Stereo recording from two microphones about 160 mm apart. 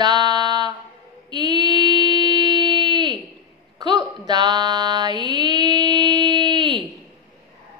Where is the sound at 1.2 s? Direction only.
25° right (ahead or behind).